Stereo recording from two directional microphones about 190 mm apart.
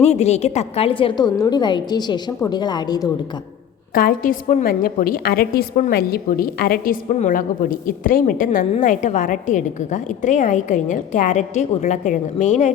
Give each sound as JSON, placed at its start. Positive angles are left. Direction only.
{"t": 0.0, "sound": "a woman's voice", "side_deg": 35}
{"t": 3.9, "sound": "a woman's voice", "side_deg": 45}